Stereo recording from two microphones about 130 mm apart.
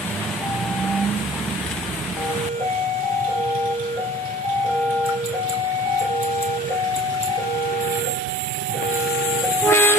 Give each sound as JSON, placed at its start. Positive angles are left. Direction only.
{"t": 9.7, "sound": "vehicle", "side_deg": 20}